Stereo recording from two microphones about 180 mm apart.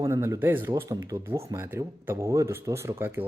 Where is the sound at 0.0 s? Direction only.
15° right (ahead or behind).